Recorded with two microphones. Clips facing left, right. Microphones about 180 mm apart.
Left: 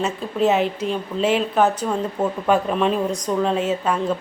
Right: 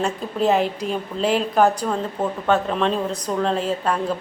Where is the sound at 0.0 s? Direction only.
Centre (ahead or behind).